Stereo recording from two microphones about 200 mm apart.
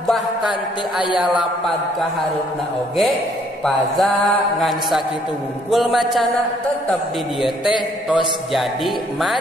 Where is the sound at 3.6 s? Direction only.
Centre (ahead or behind).